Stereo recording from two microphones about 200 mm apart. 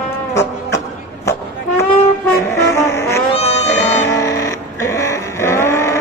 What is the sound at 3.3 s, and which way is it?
Music, 30° left (ahead or behind).